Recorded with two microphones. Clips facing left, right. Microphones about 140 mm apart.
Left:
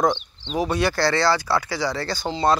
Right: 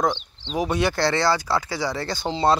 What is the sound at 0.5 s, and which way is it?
Speech, 15° right (ahead or behind).